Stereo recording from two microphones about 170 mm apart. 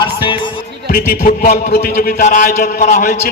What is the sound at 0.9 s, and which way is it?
A man's voice, 55° left (ahead or behind).